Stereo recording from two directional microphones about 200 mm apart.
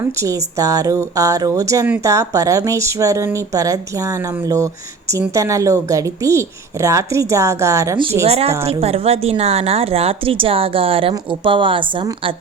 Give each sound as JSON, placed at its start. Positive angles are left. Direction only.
{"t": 0.0, "sound": "speech", "side_deg": -15}
{"t": 8.3, "sound": "a woman's voice", "side_deg": -30}